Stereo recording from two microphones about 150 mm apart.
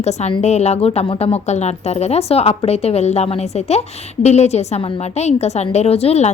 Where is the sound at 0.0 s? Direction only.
45° left (ahead or behind).